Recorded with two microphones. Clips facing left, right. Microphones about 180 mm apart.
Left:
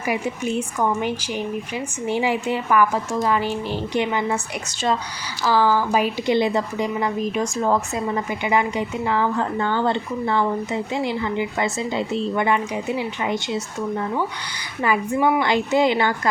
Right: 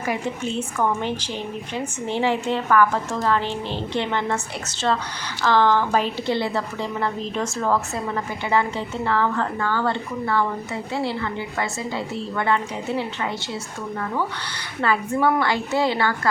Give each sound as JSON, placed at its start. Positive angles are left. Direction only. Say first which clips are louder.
{"t": 0.0, "sound": "a woman's voice", "louder": "left 2 dB", "side_deg": 10}
{"t": 5.5, "sound": "a woman's voice", "louder": "even", "side_deg": 10}